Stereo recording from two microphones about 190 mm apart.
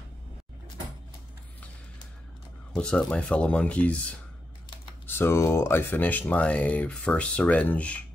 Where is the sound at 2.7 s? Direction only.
5° left (ahead or behind).